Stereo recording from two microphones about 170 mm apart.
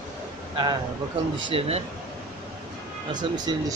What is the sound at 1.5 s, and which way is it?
Speech, 35° right (ahead or behind).